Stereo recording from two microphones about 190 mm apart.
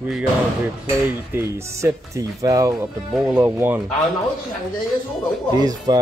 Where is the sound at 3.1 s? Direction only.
5° right (ahead or behind).